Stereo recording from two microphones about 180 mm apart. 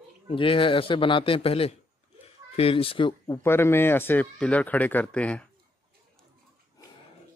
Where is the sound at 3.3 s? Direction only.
15° left (ahead or behind).